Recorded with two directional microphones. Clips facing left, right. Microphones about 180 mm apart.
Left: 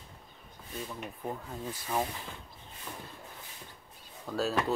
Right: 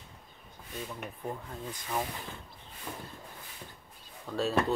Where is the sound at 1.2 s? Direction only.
5° left (ahead or behind).